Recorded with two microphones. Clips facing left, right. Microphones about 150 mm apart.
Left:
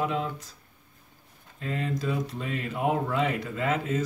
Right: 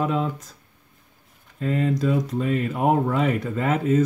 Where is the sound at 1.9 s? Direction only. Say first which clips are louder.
Right 7 dB; 45° right (ahead or behind).